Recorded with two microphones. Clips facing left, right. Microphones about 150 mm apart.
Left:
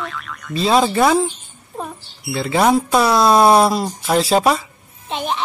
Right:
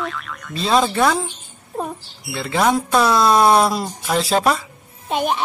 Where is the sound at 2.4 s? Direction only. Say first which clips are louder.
Left 3 dB; 5° left (ahead or behind).